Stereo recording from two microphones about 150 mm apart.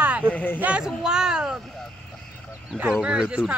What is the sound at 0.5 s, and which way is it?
Speech, 10° right (ahead or behind).